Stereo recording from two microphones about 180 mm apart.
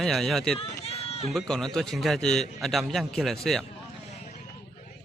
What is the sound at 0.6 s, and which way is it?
Run, 35° left (ahead or behind).